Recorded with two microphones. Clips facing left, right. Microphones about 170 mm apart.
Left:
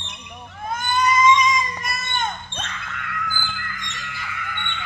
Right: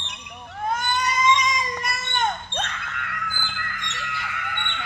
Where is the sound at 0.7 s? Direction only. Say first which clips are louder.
Left 6 dB; 70° right (ahead or behind).